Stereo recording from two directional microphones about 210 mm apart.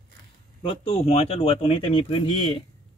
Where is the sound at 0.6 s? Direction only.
25° left (ahead or behind).